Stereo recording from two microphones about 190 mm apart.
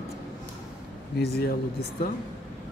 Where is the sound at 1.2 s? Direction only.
55° left (ahead or behind).